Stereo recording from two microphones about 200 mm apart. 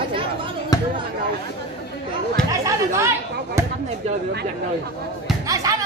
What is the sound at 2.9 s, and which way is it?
Speech, 15° right (ahead or behind).